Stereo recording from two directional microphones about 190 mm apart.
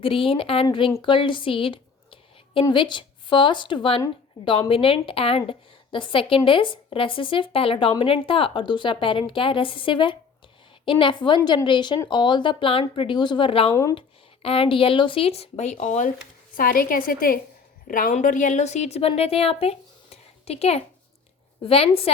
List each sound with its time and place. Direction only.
0.0 s a woman's voice: 30° left (ahead or behind)